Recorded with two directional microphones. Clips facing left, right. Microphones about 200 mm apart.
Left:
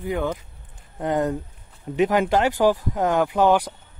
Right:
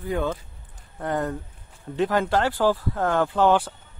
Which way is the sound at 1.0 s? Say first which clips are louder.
Left 4 dB; 20° left (ahead or behind).